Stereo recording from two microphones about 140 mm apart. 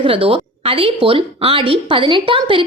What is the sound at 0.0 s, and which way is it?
A woman's voice, 40° right (ahead or behind).